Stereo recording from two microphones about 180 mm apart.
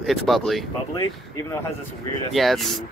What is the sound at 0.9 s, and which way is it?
Speech, 20° left (ahead or behind).